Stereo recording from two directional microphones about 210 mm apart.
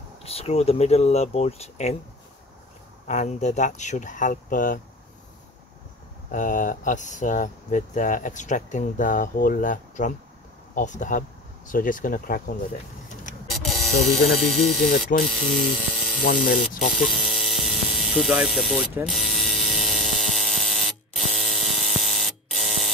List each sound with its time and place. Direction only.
0.2 s speech: 30° left (ahead or behind)
3.1 s speech: 35° left (ahead or behind)
6.3 s speech: 40° left (ahead or behind)
13.5 s a sound: centre (ahead or behind)
14.0 s speech: centre (ahead or behind)
17.0 s a sound: centre (ahead or behind)